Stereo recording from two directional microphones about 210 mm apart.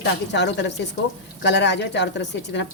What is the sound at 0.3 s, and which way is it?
Speech, 55° left (ahead or behind).